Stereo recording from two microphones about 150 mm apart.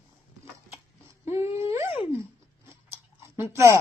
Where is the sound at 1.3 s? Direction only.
20° right (ahead or behind).